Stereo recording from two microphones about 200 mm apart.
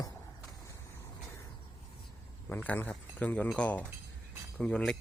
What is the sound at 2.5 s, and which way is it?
Speech, 10° left (ahead or behind).